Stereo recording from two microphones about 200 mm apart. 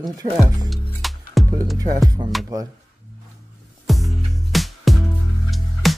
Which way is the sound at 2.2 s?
20° right (ahead or behind).